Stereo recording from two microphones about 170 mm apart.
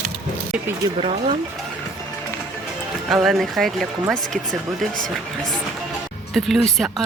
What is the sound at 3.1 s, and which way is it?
Speech, centre (ahead or behind).